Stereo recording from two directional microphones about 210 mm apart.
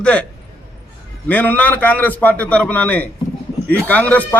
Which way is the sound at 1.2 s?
10° left (ahead or behind).